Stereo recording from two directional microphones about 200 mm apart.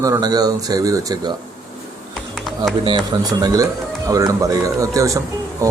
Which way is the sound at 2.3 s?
Centre (ahead or behind).